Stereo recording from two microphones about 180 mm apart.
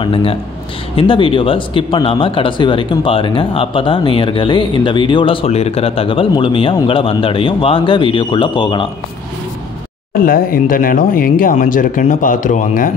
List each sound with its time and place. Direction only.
0.0 s speech: 30° left (ahead or behind)
10.2 s speech: 50° left (ahead or behind)